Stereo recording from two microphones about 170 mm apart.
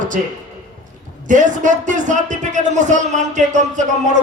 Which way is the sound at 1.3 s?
50° right (ahead or behind).